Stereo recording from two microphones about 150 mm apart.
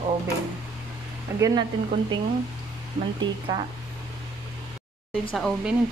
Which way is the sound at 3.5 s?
25° right (ahead or behind).